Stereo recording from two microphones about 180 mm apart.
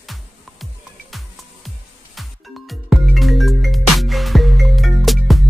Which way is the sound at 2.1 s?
Centre (ahead or behind).